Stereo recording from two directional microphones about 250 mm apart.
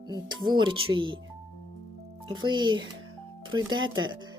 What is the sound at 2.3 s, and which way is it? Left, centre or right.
Music, centre.